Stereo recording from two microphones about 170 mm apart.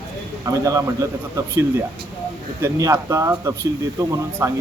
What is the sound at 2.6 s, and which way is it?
A man's voice, 15° right (ahead or behind).